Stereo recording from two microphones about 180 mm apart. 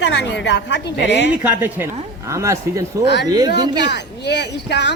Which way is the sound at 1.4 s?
10° right (ahead or behind).